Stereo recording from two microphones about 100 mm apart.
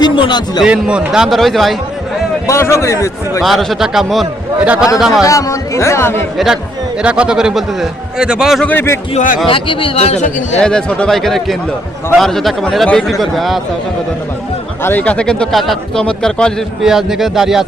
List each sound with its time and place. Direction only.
0.0 s a man's voice: 45° left (ahead or behind)
0.6 s a man's voice: 10° right (ahead or behind)
2.5 s a man's voice: 25° left (ahead or behind)
3.4 s a man's voice: centre (ahead or behind)
4.6 s a man's voice: 15° right (ahead or behind)
4.9 s a man's voice: centre (ahead or behind)
5.2 s speech: 35° left (ahead or behind)
6.3 s a man's voice: 5° right (ahead or behind)
8.6 s a man's voice: 20° left (ahead or behind)
9.5 s speech: 60° left (ahead or behind); by 10.6 s 90° left
10.6 s a man's voice: 10° left (ahead or behind)
14.8 s speech: 15° left (ahead or behind)
16.8 s a man's voice: 5° right (ahead or behind)